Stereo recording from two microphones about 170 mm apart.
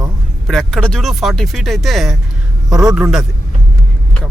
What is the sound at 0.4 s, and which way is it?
Speech, centre (ahead or behind).